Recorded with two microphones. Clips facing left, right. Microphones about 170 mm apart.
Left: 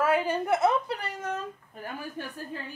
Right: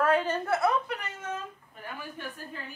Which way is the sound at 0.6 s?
30° left (ahead or behind).